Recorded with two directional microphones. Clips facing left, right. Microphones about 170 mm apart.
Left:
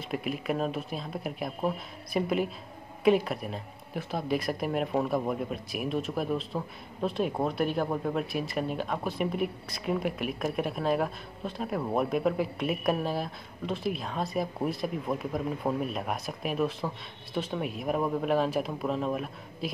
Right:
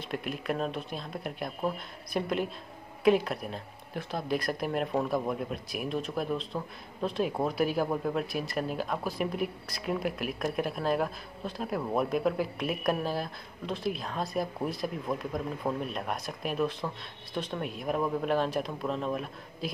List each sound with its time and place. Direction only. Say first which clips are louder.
0.1 s speech: left 2 dB; centre (ahead or behind)